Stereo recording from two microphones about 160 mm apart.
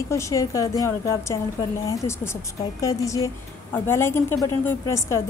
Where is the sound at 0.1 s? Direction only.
20° left (ahead or behind).